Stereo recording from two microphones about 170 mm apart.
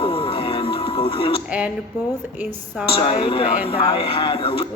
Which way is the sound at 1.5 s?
5° right (ahead or behind).